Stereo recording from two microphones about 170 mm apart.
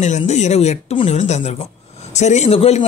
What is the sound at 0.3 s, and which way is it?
Speech, 40° left (ahead or behind).